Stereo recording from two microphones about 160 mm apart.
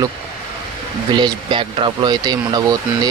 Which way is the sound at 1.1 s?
30° right (ahead or behind).